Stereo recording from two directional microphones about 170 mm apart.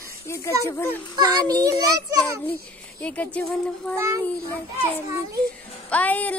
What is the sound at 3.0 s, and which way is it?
Speech, 10° left (ahead or behind).